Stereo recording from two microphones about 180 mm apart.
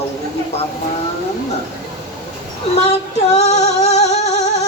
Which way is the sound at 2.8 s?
35° left (ahead or behind).